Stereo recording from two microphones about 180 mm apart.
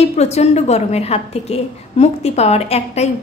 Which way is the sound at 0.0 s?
35° left (ahead or behind).